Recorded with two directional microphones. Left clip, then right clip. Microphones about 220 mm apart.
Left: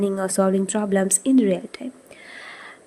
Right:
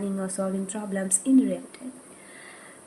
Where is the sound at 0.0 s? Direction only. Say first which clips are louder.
Left 9 dB; 50° left (ahead or behind).